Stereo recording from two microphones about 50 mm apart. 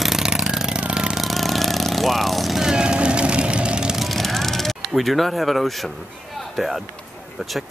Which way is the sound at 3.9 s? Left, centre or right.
Centre.